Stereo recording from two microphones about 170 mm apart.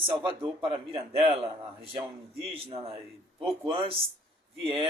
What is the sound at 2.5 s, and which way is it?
Speech, 35° right (ahead or behind).